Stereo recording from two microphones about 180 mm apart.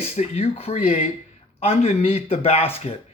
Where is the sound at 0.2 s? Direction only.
35° left (ahead or behind).